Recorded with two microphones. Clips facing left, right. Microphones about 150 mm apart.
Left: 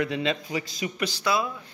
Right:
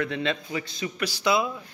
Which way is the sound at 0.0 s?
15° left (ahead or behind).